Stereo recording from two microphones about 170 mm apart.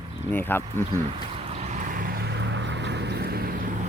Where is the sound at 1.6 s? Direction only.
45° right (ahead or behind); by 3.6 s 65° right (ahead or behind).